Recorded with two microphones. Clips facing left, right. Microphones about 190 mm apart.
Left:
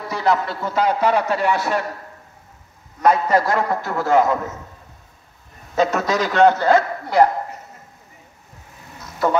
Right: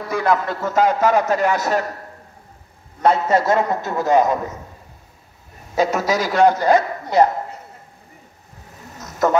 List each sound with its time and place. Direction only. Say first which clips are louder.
0.1 s a man's voice: right 1 dB; 50° right (ahead or behind)
3.0 s a man's voice: even; 25° right (ahead or behind)
5.8 s a man's voice: even; 10° right (ahead or behind)
8.9 s a sound: right 2 dB; 45° right (ahead or behind)